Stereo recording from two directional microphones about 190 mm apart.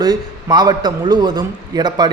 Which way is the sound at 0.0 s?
20° right (ahead or behind).